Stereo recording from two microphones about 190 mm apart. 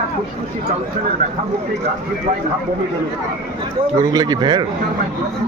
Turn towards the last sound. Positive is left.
turn(degrees=-25)  # may be behind; listen again after turning